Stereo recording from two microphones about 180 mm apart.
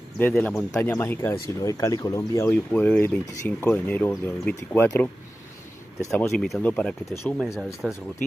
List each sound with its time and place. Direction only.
0.2 s speech: 10° left (ahead or behind)
6.3 s speech: centre (ahead or behind)